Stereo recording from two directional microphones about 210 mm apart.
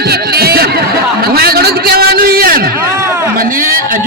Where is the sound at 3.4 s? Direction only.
40° right (ahead or behind).